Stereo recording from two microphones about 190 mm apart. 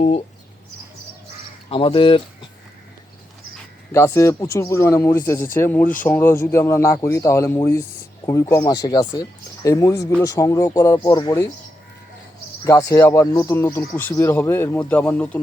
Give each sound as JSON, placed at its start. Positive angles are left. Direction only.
{"t": 1.7, "sound": "speech", "side_deg": 30}
{"t": 3.9, "sound": "speech", "side_deg": 15}
{"t": 12.6, "sound": "speech", "side_deg": 15}